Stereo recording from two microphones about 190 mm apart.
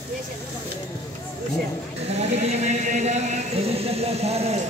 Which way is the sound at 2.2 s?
35° right (ahead or behind).